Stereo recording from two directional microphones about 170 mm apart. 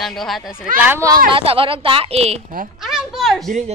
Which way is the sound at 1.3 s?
30° right (ahead or behind).